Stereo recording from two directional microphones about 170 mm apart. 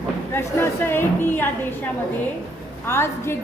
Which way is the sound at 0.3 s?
15° left (ahead or behind).